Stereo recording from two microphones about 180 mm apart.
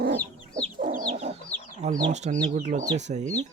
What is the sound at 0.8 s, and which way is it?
Chicken, 45° right (ahead or behind).